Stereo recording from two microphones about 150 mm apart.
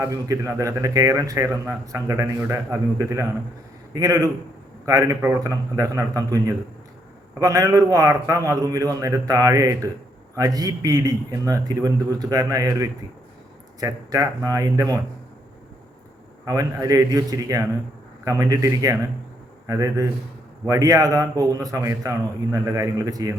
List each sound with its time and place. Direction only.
0.0 s a man's voice: 20° right (ahead or behind)
16.5 s a man's voice: 25° right (ahead or behind)